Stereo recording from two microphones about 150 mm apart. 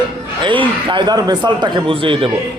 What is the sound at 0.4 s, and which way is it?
A man's voice, 35° right (ahead or behind).